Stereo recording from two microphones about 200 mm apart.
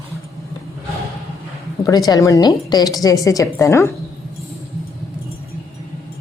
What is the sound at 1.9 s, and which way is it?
A woman's voice, 15° left (ahead or behind).